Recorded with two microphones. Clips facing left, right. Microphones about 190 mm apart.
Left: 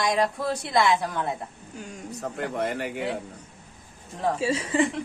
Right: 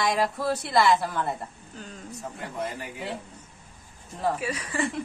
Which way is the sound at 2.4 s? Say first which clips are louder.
Left 6 dB; 75° left (ahead or behind).